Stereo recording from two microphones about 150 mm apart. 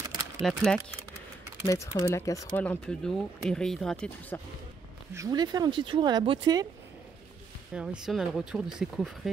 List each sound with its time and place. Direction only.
0.4 s speech: 5° left (ahead or behind)
1.7 s speech: 20° left (ahead or behind)
2.5 s speech: 10° left (ahead or behind)
5.1 s speech: 25° right (ahead or behind)
7.7 s speech: 5° right (ahead or behind)